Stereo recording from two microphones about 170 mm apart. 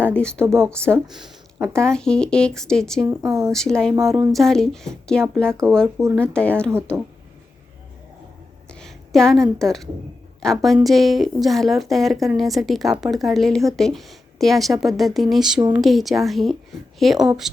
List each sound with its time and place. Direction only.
0.1 s a woman's voice: 5° left (ahead or behind)
1.5 s speech: 15° right (ahead or behind)
1.8 s a woman's voice: 5° left (ahead or behind)
3.2 s speech: 15° right (ahead or behind)
3.5 s a woman's voice: 5° left (ahead or behind)
8.7 s a woman's voice: 5° left (ahead or behind)